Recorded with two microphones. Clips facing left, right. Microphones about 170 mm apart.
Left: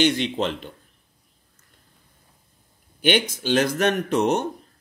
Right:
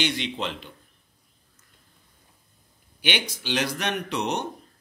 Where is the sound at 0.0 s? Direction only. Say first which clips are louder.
Left 7 dB; 50° left (ahead or behind).